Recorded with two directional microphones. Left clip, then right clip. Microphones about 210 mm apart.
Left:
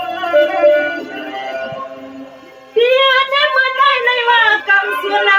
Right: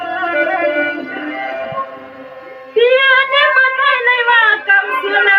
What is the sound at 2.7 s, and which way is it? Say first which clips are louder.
Music: right 1 dB; 25° left (ahead or behind).